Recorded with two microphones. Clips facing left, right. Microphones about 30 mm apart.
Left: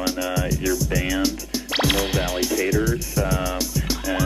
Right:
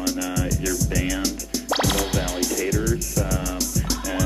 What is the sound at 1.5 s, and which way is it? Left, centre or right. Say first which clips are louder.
Music: left 1 dB; left.